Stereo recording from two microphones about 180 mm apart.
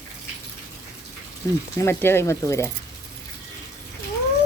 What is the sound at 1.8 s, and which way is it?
Speech, 10° left (ahead or behind).